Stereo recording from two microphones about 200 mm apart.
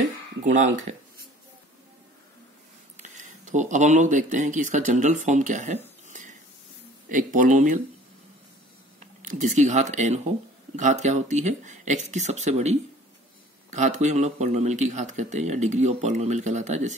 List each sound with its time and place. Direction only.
0.4 s speech: 35° right (ahead or behind)
3.0 s speech: 40° right (ahead or behind)
6.0 s a sound: 40° right (ahead or behind)
7.1 s speech: 40° right (ahead or behind)
9.0 s speech: 40° right (ahead or behind)